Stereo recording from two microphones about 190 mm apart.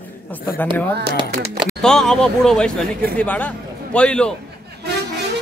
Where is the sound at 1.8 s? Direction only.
5° left (ahead or behind).